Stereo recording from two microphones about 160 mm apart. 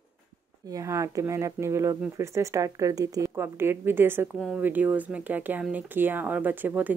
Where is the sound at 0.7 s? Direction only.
20° right (ahead or behind).